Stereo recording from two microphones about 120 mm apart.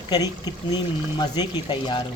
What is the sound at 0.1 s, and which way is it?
Speech, 35° left (ahead or behind).